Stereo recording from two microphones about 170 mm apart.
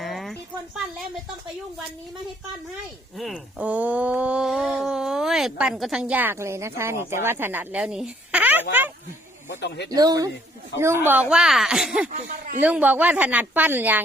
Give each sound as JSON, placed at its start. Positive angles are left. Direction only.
{"t": 0.0, "sound": "a sound", "side_deg": 0}
{"t": 3.2, "sound": "speech", "side_deg": 0}
{"t": 9.6, "sound": "speech", "side_deg": 80}
{"t": 9.9, "sound": "a woman's voice", "side_deg": -20}
{"t": 12.0, "sound": "speech", "side_deg": -50}
{"t": 12.6, "sound": "speech", "side_deg": -10}